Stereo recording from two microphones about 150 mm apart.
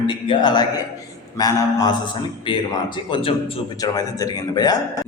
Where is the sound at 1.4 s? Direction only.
25° left (ahead or behind).